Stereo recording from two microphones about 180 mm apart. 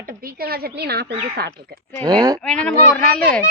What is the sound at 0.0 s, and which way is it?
A woman's voice, 55° right (ahead or behind).